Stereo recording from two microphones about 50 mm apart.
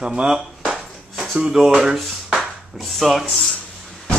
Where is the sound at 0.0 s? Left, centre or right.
Centre.